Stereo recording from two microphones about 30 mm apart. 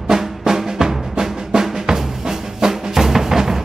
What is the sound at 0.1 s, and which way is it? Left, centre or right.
Drum, centre.